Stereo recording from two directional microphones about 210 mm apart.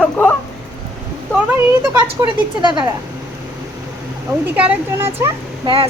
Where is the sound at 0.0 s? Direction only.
5° left (ahead or behind).